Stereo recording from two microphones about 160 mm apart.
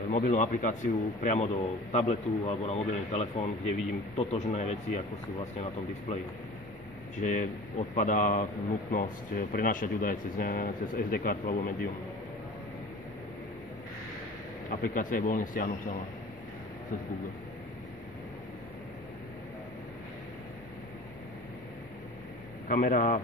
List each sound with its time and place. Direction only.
0.1 s a man's voice: 50° left (ahead or behind)
7.2 s a man's voice: 50° left (ahead or behind)
14.7 s speech: 55° left (ahead or behind)
22.7 s speech: 55° left (ahead or behind)